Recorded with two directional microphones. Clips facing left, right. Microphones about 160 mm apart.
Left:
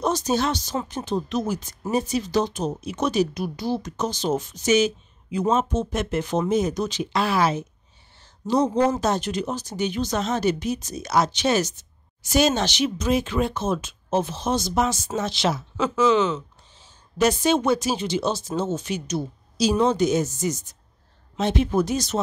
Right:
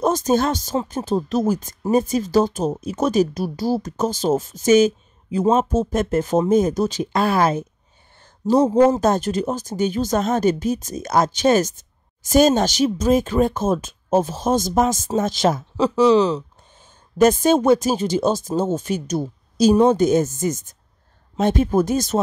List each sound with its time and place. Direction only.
0.0 s speech: 45° right (ahead or behind)
8.7 s speech: 45° right (ahead or behind)
15.7 s speech: 35° right (ahead or behind)
17.2 s speech: 45° right (ahead or behind)